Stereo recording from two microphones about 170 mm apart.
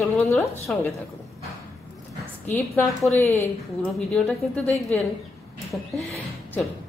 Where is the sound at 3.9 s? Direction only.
5° left (ahead or behind).